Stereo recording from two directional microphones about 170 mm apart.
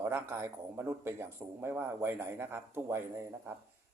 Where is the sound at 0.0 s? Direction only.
15° right (ahead or behind).